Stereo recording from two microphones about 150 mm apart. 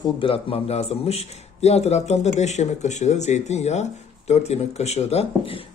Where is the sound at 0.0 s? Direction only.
35° left (ahead or behind).